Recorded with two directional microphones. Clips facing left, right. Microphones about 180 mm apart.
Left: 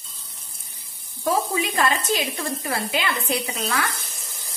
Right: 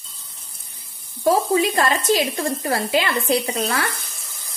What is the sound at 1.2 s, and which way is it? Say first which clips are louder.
Speech: right 6 dB; 35° right (ahead or behind).